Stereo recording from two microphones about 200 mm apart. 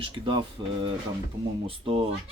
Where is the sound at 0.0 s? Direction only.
25° right (ahead or behind).